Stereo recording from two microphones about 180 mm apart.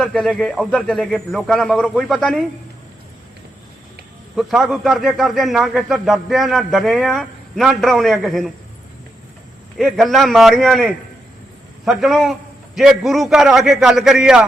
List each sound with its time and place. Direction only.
0.0 s a man's voice: 5° left (ahead or behind)
4.4 s a man's voice: centre (ahead or behind)
9.7 s a man's voice: centre (ahead or behind)